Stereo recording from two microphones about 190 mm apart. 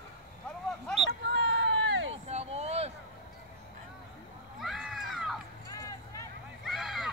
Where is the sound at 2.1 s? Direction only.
35° right (ahead or behind).